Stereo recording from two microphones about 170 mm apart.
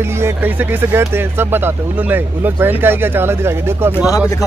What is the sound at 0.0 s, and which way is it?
Speech, 15° right (ahead or behind).